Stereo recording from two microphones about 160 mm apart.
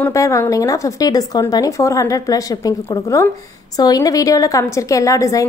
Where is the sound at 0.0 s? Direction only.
20° left (ahead or behind).